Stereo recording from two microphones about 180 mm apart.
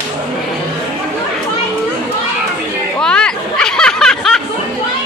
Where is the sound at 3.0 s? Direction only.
5° left (ahead or behind).